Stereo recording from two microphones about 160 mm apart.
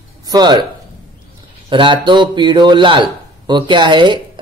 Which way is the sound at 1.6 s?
30° right (ahead or behind).